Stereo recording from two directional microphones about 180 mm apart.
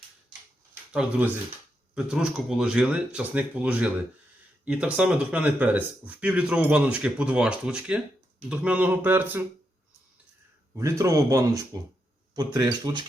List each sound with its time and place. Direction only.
2.0 s speech: centre (ahead or behind)
10.8 s speech: 15° right (ahead or behind)